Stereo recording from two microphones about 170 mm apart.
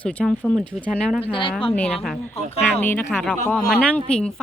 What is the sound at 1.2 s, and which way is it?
Speech, 30° left (ahead or behind).